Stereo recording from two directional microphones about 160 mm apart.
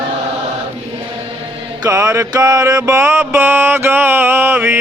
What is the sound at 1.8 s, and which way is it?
Mantra, 20° right (ahead or behind).